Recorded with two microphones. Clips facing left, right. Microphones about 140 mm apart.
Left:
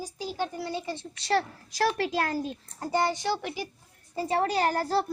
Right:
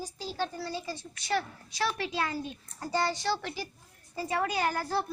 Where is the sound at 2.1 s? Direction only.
45° left (ahead or behind).